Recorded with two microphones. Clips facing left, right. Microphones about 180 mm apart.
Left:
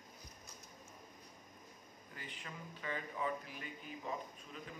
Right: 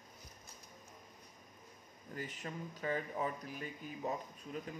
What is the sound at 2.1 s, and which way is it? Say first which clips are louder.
A man's voice: right 7 dB; 45° right (ahead or behind).